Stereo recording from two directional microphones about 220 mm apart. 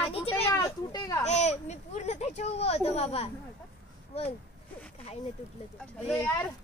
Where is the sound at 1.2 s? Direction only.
30° left (ahead or behind).